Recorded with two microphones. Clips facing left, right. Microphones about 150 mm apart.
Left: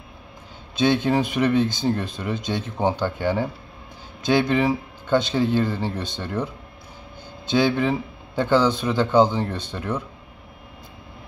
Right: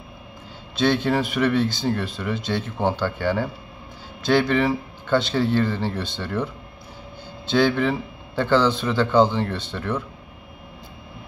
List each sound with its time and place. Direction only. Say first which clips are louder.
0.7 s speech: left 1 dB; 15° left (ahead or behind)